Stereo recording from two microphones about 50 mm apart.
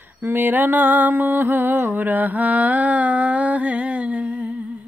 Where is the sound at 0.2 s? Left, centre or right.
Right.